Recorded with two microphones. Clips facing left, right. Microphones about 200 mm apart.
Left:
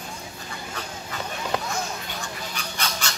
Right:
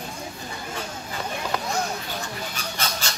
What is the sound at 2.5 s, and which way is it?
Goose, 40° right (ahead or behind).